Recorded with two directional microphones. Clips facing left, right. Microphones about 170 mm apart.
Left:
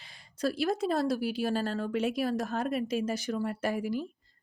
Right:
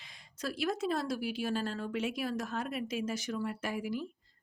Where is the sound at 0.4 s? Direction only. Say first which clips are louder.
Left 5 dB; 35° left (ahead or behind).